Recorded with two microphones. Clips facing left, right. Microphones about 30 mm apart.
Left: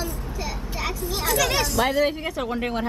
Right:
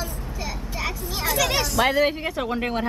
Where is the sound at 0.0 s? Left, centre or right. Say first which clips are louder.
Left 1 dB; centre.